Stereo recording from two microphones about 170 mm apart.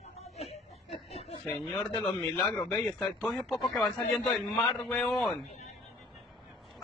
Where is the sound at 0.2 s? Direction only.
35° left (ahead or behind).